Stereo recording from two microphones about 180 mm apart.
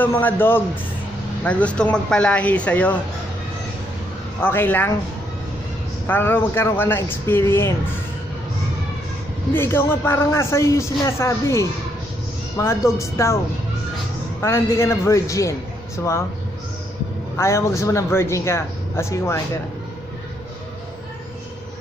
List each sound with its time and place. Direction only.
0.0 s speech: 10° left (ahead or behind)
4.4 s speech: 10° left (ahead or behind)
6.0 s speech: 10° left (ahead or behind)
9.5 s speech: 10° left (ahead or behind)
14.4 s speech: 15° left (ahead or behind)
17.4 s speech: 15° left (ahead or behind)